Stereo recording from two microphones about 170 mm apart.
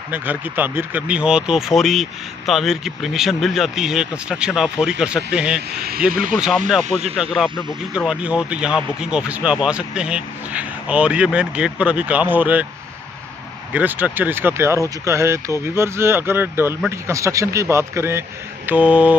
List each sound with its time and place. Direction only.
0.1 s speech: 10° right (ahead or behind)
13.7 s speech: 10° right (ahead or behind)